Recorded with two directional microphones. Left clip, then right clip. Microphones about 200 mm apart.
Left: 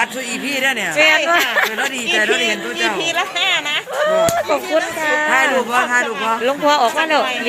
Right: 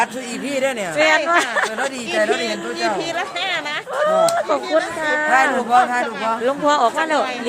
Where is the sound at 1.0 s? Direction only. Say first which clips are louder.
Left 2 dB; centre (ahead or behind).